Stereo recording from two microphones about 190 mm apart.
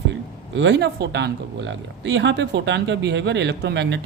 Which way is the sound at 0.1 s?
70° right (ahead or behind).